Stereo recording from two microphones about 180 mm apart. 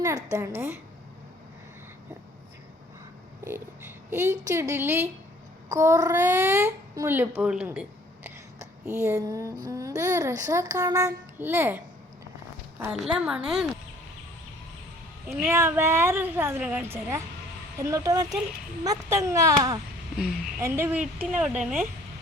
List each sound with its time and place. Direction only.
0.0 s speech: 20° right (ahead or behind)
4.1 s speech: 15° right (ahead or behind)
12.8 s a woman's voice: 5° right (ahead or behind)
15.4 s speech: 15° right (ahead or behind)